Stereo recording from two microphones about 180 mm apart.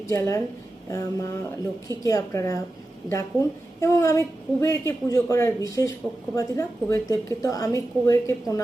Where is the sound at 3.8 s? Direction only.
15° left (ahead or behind).